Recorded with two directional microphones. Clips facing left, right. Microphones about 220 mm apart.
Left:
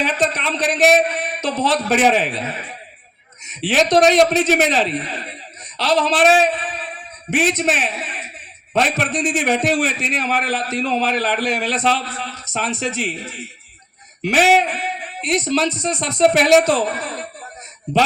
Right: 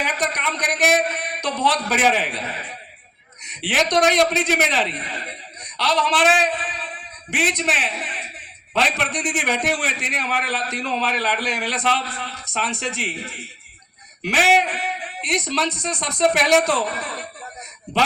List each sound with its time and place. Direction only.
0.0 s a man's voice: 25° left (ahead or behind)
3.5 s a man's voice: 25° left (ahead or behind)
8.7 s a man's voice: 25° left (ahead or behind)
14.2 s a man's voice: 25° left (ahead or behind)